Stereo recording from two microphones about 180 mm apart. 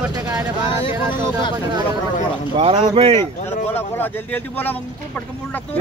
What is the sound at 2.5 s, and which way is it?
Speech, 30° right (ahead or behind).